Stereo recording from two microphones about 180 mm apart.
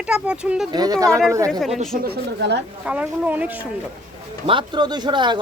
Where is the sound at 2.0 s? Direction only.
70° right (ahead or behind).